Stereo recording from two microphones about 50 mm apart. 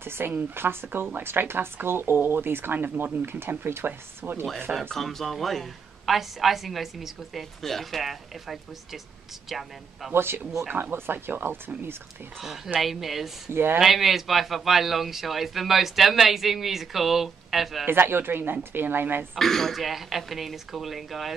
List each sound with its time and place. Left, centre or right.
0.0 s speech: right
4.9 s a woman's voice: centre
10.1 s speech: right
12.4 s a woman's voice: centre
13.5 s speech: right
13.7 s a woman's voice: centre
17.8 s speech: right
19.3 s a woman's voice: centre